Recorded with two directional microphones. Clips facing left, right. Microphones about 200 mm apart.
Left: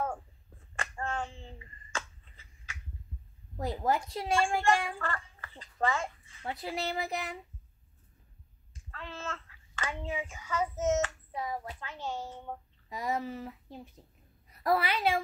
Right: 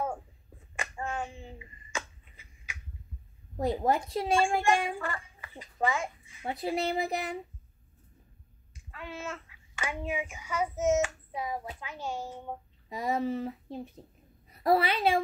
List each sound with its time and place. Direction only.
0.7 s finger snapping: 10° right (ahead or behind)
3.5 s a woman's voice: 25° right (ahead or behind)
6.4 s a woman's voice: 25° right (ahead or behind)
8.9 s a child's voice: 10° right (ahead or behind)
12.9 s a woman's voice: 25° right (ahead or behind)